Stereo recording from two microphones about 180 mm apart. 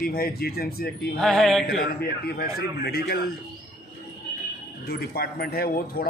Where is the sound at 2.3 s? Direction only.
60° left (ahead or behind).